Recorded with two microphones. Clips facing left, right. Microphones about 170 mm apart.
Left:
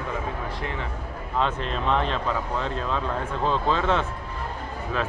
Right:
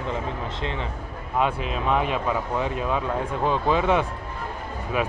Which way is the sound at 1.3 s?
10° right (ahead or behind).